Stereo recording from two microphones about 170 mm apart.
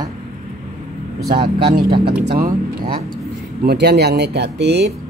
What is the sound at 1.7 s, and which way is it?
Speech, 65° right (ahead or behind).